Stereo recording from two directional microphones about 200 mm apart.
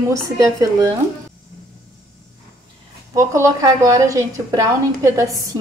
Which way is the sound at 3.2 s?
15° right (ahead or behind).